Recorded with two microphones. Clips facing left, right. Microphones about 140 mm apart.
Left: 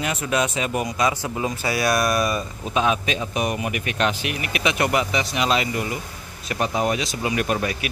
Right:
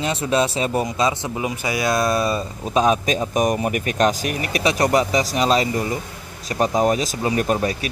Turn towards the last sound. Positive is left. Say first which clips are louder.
# right 3 dB
turn(degrees=-35)  # may be behind; listen again after turning